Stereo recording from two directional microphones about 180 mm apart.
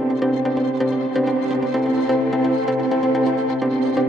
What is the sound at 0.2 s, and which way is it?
Music, centre (ahead or behind).